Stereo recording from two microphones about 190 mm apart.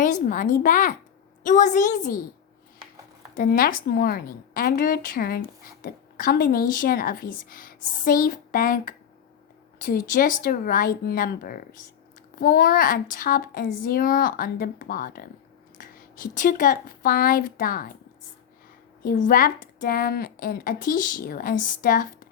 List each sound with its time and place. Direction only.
0.0 s a woman's voice: 45° left (ahead or behind)
3.3 s a woman's voice: 50° left (ahead or behind)
19.0 s a woman's voice: 50° left (ahead or behind)